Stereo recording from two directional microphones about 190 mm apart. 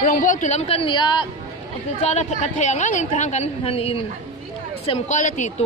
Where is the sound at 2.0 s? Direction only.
35° left (ahead or behind).